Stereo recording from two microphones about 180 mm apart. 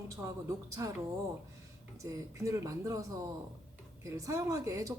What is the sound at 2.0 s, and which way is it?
A woman's voice, 15° right (ahead or behind).